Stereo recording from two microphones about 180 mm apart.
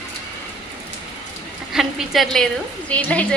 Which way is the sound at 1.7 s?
Centre (ahead or behind).